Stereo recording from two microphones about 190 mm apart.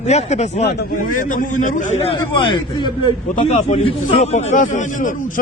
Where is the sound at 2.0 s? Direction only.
25° left (ahead or behind).